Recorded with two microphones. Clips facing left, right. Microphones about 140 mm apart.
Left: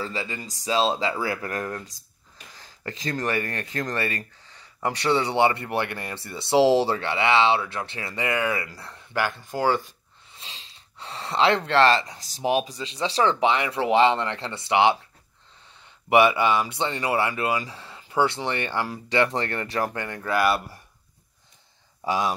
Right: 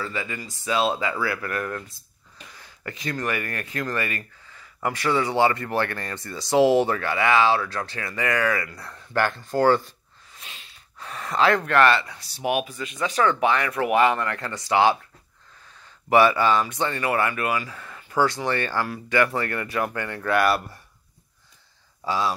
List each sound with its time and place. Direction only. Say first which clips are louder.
0.0 s speech: even; 35° left (ahead or behind)
9.1 s speech: right 3 dB; 10° left (ahead or behind)
10.3 s speech: even; 25° left (ahead or behind)
17.6 s speech: right 1 dB; 30° left (ahead or behind)
20.2 s speech: right 1 dB; centre (ahead or behind)
22.0 s speech: even; 15° left (ahead or behind)